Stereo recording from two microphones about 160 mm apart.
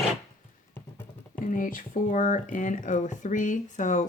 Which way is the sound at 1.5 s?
55° left (ahead or behind).